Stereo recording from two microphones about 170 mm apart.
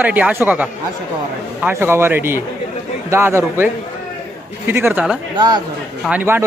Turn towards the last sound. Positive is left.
turn(degrees=-10)  # may be behind; listen again after turning